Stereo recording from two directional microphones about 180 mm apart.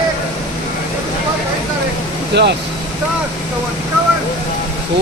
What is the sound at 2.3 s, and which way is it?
Speech, 70° right (ahead or behind).